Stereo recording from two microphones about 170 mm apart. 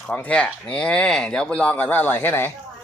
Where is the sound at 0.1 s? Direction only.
10° left (ahead or behind).